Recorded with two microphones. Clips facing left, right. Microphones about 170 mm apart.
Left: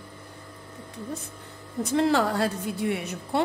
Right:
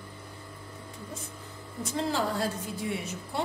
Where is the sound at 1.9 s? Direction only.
70° left (ahead or behind).